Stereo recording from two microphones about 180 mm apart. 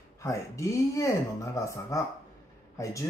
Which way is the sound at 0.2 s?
15° left (ahead or behind).